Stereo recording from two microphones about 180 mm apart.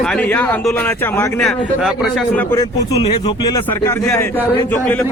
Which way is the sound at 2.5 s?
20° left (ahead or behind).